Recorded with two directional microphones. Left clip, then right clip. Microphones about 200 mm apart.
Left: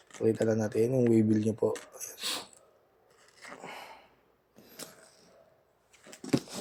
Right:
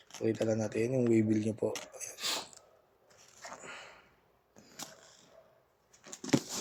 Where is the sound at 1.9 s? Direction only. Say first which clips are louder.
Left 1 dB; 20° left (ahead or behind).